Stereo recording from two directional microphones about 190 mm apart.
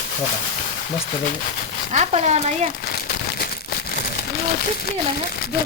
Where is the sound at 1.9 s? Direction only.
40° right (ahead or behind).